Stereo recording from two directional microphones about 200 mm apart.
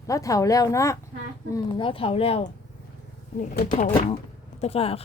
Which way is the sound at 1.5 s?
25° left (ahead or behind).